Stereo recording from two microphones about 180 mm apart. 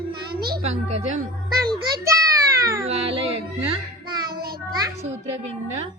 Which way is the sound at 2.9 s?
30° right (ahead or behind).